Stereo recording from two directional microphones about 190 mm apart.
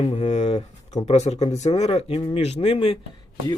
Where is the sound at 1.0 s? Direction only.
35° left (ahead or behind).